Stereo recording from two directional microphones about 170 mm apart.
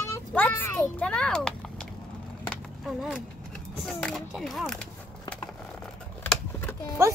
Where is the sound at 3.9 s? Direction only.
5° left (ahead or behind).